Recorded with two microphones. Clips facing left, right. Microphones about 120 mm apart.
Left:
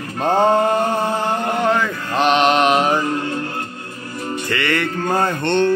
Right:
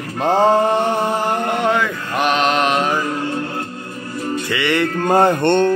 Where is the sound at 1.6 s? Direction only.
10° right (ahead or behind).